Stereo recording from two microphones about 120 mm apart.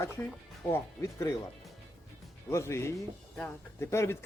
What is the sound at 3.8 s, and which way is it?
Speech, 20° left (ahead or behind).